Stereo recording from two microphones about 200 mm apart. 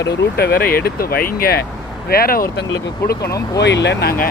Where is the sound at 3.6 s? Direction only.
60° left (ahead or behind).